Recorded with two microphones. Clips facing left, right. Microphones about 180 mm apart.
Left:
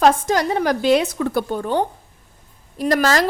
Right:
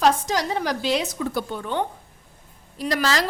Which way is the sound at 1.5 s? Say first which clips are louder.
Left 6 dB; 40° left (ahead or behind).